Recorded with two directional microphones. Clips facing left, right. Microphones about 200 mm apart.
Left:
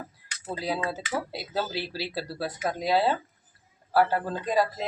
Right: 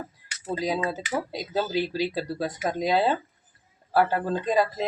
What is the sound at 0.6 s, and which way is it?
Speech, 15° right (ahead or behind).